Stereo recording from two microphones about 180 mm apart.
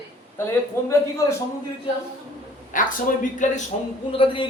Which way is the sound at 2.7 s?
45° left (ahead or behind).